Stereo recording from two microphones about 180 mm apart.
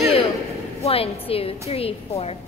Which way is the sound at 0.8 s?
30° left (ahead or behind).